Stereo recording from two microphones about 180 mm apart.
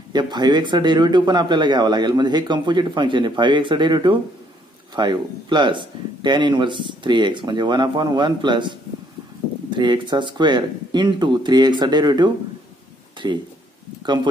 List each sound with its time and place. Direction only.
0.1 s speech: 25° right (ahead or behind)
9.8 s speech: 25° right (ahead or behind)